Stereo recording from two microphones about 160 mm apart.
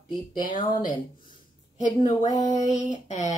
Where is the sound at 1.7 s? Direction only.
50° left (ahead or behind).